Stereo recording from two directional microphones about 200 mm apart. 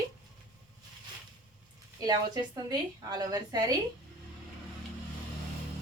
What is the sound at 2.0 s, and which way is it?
A woman's voice, 20° right (ahead or behind).